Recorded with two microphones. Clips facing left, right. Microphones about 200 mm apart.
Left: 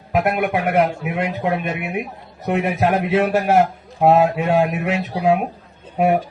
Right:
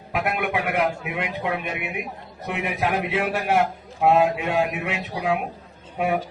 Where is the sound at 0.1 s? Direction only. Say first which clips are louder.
Left 6 dB; 40° left (ahead or behind).